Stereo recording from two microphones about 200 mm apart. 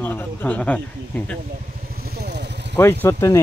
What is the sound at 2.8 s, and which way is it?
Speech, 10° left (ahead or behind).